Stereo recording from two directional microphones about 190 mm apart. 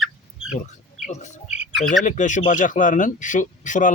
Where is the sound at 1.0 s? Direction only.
40° left (ahead or behind).